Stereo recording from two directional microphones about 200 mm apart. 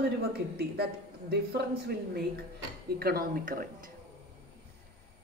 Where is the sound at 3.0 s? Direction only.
50° right (ahead or behind).